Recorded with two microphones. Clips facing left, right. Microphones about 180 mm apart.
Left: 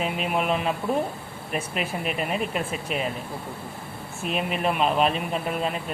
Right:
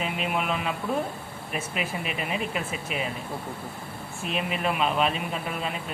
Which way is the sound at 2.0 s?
45° left (ahead or behind).